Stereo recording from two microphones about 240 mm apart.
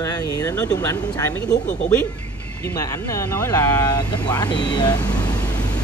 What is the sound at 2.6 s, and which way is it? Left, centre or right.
Speech, centre.